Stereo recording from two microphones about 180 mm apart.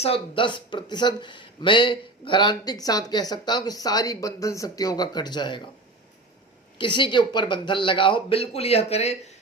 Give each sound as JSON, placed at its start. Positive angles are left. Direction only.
{"t": 0.0, "sound": "speech", "side_deg": 30}
{"t": 6.7, "sound": "speech", "side_deg": 25}